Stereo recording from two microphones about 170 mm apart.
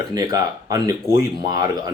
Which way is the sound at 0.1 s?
20° right (ahead or behind).